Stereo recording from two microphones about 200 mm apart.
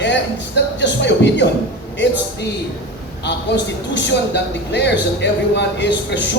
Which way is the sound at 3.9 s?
60° left (ahead or behind).